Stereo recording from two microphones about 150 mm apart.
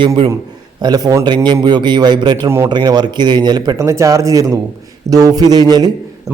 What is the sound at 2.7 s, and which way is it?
Speech, 30° right (ahead or behind).